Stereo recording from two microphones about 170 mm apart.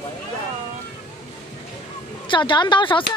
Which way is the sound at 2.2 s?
30° left (ahead or behind).